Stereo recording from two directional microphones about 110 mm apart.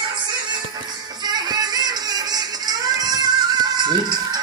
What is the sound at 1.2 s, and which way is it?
Music, 35° right (ahead or behind).